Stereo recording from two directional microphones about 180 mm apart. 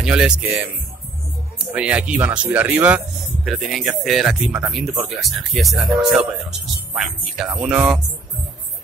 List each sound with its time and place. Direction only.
0.0 s speech: 5° right (ahead or behind)
1.7 s speech: 10° right (ahead or behind)